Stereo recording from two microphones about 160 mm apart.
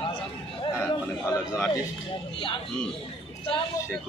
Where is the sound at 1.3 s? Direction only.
20° left (ahead or behind).